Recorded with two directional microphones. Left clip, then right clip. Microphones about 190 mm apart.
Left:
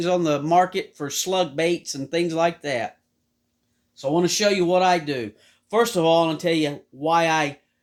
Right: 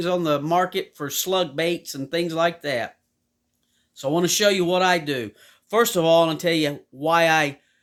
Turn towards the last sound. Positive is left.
turn(degrees=-30)  # may be behind; listen again after turning